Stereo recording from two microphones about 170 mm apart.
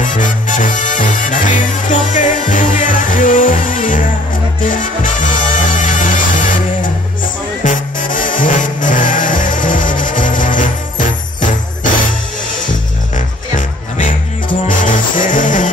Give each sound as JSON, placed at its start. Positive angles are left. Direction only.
{"t": 0.0, "sound": "music", "side_deg": 50}
{"t": 13.6, "sound": "music", "side_deg": 45}